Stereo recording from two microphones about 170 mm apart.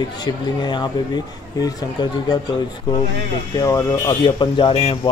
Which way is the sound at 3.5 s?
20° left (ahead or behind).